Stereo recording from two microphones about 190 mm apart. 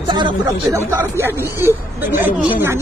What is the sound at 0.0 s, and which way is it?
Speech, 25° right (ahead or behind).